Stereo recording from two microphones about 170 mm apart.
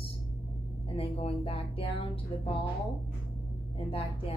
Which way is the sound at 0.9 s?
35° left (ahead or behind).